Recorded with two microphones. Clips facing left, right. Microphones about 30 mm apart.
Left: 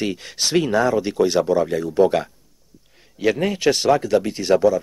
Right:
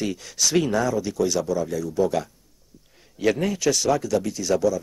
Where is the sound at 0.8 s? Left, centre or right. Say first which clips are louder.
Left 5 dB; left.